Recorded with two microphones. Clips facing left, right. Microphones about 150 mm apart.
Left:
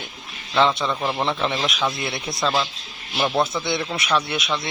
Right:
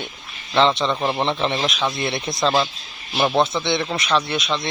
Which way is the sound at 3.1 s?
25° right (ahead or behind).